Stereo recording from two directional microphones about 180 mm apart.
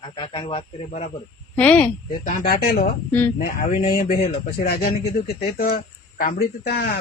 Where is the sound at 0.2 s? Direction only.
25° left (ahead or behind).